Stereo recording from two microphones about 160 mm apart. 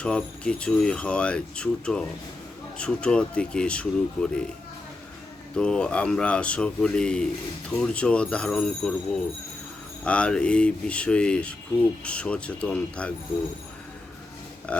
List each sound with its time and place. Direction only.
0.0 s speech: 5° left (ahead or behind)
5.5 s speech: 5° left (ahead or behind)
10.0 s speech: 5° left (ahead or behind)
14.7 s a sound: 10° left (ahead or behind)